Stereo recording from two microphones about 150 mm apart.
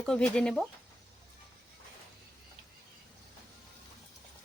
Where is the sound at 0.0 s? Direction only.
5° left (ahead or behind).